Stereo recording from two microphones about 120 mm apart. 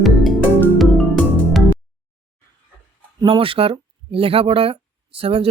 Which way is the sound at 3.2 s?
45° right (ahead or behind).